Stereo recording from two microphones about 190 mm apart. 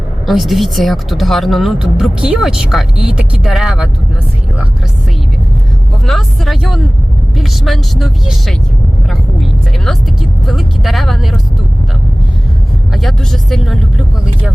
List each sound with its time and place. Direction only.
0.3 s speech: centre (ahead or behind)
6.1 s speech: centre (ahead or behind)
12.9 s speech: centre (ahead or behind)